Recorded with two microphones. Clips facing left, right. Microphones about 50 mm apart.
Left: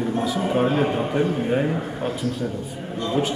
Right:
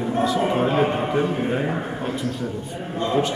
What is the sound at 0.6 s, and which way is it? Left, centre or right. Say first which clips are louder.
Speech: left 2 dB; centre.